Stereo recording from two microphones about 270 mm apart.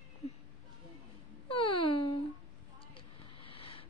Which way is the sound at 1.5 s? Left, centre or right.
Centre.